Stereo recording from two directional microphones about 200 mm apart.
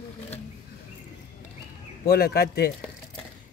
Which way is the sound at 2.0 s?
50° left (ahead or behind).